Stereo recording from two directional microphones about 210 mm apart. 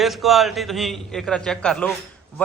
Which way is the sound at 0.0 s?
Centre (ahead or behind).